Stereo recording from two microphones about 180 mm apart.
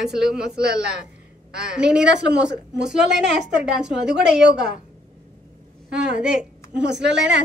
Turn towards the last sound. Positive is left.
turn(degrees=-75)  # may be behind; listen again after turning